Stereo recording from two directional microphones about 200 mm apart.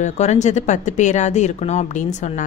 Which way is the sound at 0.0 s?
35° left (ahead or behind).